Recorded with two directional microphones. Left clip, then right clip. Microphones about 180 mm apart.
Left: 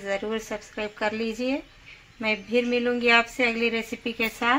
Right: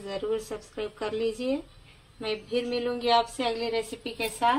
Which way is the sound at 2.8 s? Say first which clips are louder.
Left 3 dB; 25° left (ahead or behind).